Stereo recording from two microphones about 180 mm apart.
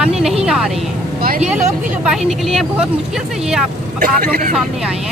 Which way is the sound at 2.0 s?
Centre (ahead or behind).